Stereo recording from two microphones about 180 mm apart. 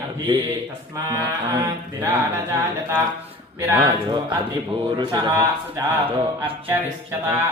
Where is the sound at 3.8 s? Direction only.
25° right (ahead or behind).